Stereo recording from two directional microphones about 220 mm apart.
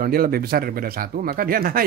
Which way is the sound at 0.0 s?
45° right (ahead or behind).